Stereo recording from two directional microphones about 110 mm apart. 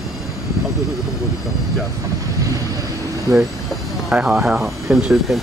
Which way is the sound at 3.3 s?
30° right (ahead or behind).